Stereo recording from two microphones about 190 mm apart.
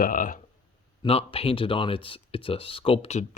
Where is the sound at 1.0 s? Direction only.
30° left (ahead or behind).